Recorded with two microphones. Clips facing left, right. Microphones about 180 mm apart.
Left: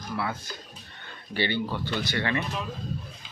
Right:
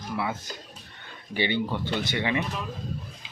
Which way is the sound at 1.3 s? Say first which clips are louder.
Right 1 dB; 20° right (ahead or behind).